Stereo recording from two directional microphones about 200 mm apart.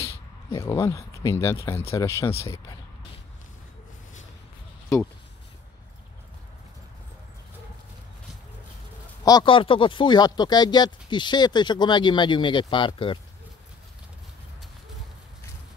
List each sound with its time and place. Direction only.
0.0 s speech: 15° left (ahead or behind)
9.2 s speech: 20° left (ahead or behind)